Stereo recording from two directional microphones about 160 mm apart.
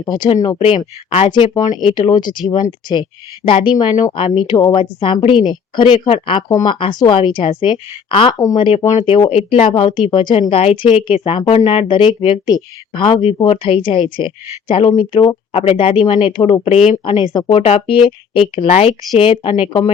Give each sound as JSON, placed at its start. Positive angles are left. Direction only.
{"t": 0.0, "sound": "a woman's voice", "side_deg": 30}
{"t": 17.5, "sound": "a woman's voice", "side_deg": 40}